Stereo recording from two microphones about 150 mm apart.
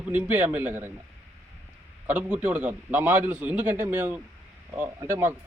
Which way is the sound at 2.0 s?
10° right (ahead or behind).